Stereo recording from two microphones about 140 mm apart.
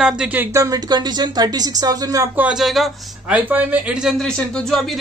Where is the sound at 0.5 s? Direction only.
25° right (ahead or behind).